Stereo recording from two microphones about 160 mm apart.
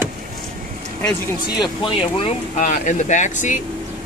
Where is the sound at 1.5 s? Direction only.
30° left (ahead or behind).